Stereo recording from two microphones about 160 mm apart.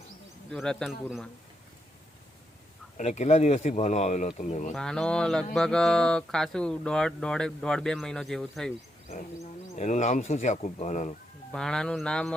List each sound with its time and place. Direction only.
0.5 s speech: 5° left (ahead or behind)
3.0 s a man's voice: 45° left (ahead or behind)
4.7 s speech: 5° left (ahead or behind)
9.0 s a man's voice: 45° left (ahead or behind)
11.5 s speech: 5° left (ahead or behind)